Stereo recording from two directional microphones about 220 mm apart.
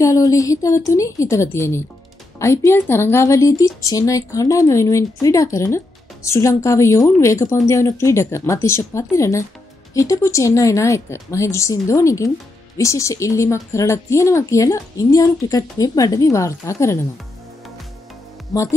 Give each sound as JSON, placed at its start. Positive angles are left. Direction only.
{"t": 0.0, "sound": "speech", "side_deg": 15}
{"t": 18.5, "sound": "speech", "side_deg": 15}